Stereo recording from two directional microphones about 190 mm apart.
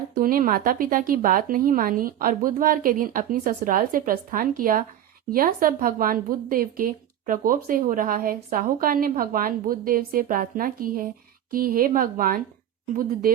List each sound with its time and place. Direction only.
0.1 s a woman's voice: 50° right (ahead or behind)